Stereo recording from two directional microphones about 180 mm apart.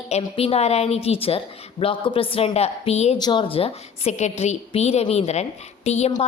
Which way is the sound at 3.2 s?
25° left (ahead or behind).